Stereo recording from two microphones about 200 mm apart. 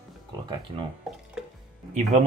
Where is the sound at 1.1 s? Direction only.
Centre (ahead or behind).